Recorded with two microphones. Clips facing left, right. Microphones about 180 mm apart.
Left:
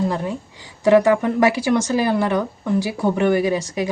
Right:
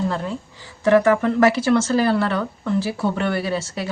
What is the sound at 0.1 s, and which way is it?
Speech, 15° left (ahead or behind).